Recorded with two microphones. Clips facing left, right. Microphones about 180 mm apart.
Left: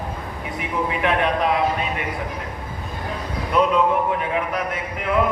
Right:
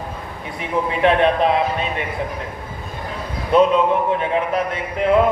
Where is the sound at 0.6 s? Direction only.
30° right (ahead or behind).